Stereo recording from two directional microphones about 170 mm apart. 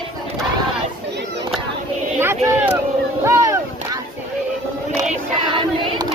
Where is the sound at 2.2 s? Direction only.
15° right (ahead or behind).